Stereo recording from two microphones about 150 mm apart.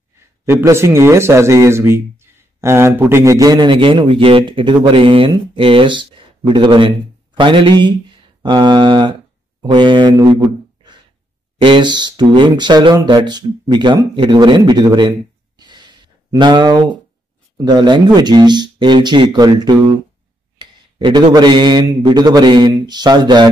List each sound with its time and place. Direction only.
0.5 s speech: 15° right (ahead or behind)
11.5 s speech: 35° right (ahead or behind)
15.5 s a sound: 30° right (ahead or behind)
17.6 s speech: 30° right (ahead or behind)